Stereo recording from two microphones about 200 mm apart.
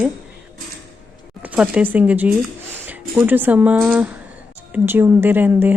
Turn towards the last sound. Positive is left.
turn(degrees=-10)  # may be behind; listen again after turning